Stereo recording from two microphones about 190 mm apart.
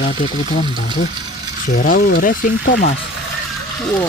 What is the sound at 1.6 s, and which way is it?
Speech, 45° left (ahead or behind).